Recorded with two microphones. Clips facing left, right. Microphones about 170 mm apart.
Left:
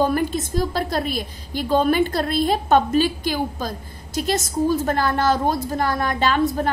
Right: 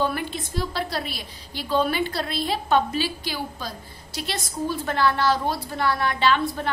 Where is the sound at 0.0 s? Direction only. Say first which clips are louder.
Left 6 dB; 45° left (ahead or behind).